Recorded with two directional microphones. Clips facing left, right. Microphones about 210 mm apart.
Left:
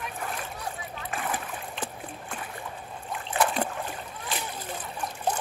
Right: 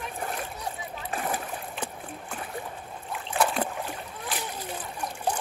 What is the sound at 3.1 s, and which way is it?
Splash, centre (ahead or behind).